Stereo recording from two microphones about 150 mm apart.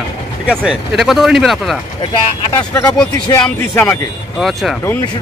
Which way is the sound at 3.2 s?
20° left (ahead or behind).